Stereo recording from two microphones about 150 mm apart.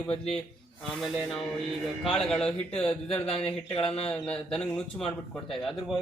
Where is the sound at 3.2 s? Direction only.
40° left (ahead or behind).